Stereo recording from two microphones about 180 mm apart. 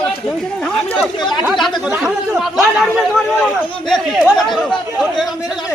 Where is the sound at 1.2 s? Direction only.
25° left (ahead or behind).